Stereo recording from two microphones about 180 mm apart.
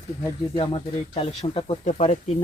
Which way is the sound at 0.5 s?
30° left (ahead or behind).